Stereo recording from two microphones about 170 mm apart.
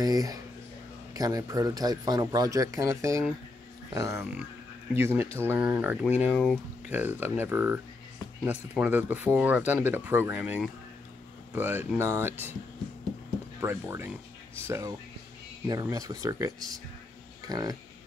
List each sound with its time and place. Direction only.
0.0 s speech: 20° right (ahead or behind)
6.2 s speech: centre (ahead or behind)
6.9 s speech: 10° right (ahead or behind)
13.6 s speech: 15° right (ahead or behind)